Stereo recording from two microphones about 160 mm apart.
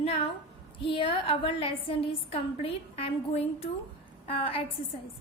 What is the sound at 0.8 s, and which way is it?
A woman's voice, 35° left (ahead or behind).